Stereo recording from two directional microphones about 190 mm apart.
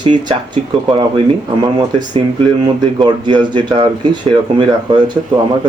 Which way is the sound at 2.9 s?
25° right (ahead or behind).